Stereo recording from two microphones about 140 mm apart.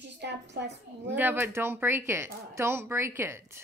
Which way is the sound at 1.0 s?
15° right (ahead or behind).